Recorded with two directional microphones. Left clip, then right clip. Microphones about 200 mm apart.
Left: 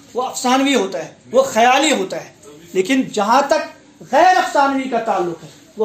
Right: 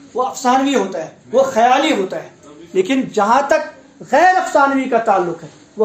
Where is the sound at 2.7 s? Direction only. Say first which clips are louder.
Right 2 dB; 35° left (ahead or behind).